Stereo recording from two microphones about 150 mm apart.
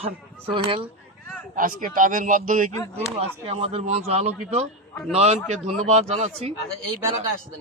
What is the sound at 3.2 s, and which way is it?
Speech, 45° right (ahead or behind).